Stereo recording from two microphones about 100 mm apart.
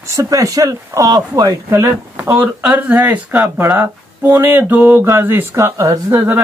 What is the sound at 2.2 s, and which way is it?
Speech, 20° right (ahead or behind).